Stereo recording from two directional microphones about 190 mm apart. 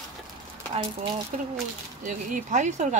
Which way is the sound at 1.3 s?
40° right (ahead or behind).